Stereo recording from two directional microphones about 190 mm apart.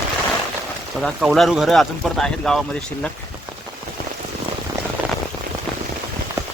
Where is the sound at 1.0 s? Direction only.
Centre (ahead or behind).